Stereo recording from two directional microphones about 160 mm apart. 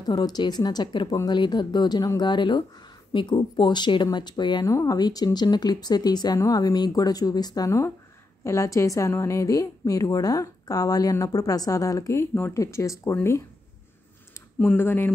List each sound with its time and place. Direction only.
0.0 s a woman's voice: 25° left (ahead or behind)
14.6 s speech: 10° left (ahead or behind)